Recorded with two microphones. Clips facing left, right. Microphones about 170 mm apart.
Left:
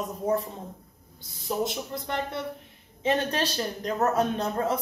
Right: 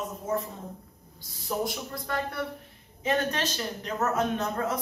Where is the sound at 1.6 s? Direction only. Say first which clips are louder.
Left 2 dB; 25° left (ahead or behind).